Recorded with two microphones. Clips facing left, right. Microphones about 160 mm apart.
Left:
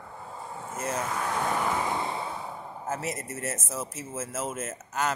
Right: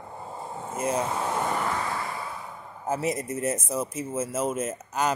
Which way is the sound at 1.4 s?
Centre (ahead or behind).